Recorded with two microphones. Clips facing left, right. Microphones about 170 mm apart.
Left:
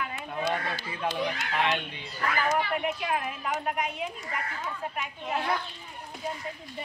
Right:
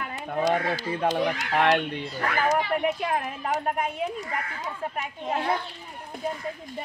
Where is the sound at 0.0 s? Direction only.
40° right (ahead or behind).